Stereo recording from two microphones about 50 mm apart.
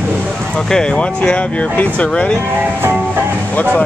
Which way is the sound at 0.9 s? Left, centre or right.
Left.